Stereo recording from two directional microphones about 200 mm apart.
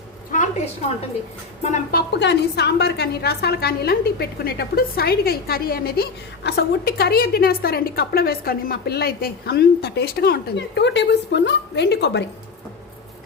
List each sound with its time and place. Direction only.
1.7 s a woman's voice: 50° left (ahead or behind)